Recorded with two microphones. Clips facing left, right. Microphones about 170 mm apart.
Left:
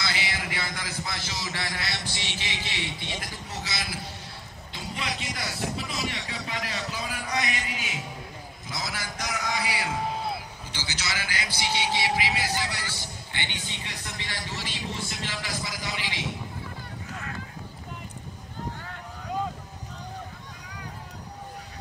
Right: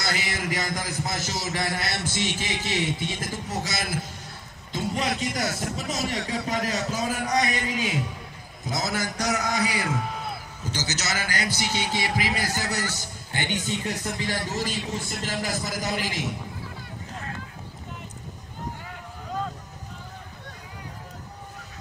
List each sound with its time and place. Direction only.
0.0 s a man's voice: 45° right (ahead or behind)
8.6 s a man's voice: 45° right (ahead or behind)